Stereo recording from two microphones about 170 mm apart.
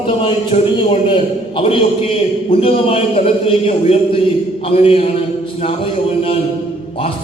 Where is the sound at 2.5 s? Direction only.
35° left (ahead or behind).